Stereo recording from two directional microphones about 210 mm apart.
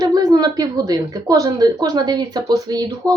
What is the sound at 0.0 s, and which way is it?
A woman's voice, 15° right (ahead or behind).